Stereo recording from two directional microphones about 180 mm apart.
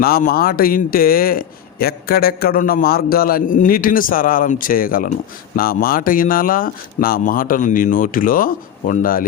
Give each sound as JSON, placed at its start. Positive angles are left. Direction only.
{"t": 0.0, "sound": "a man's voice", "side_deg": 55}